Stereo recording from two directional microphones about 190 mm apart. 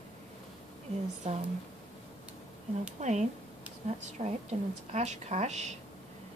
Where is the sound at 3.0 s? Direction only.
40° right (ahead or behind).